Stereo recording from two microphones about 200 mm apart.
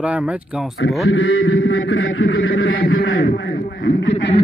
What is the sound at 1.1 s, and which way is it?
A man's voice, 70° left (ahead or behind).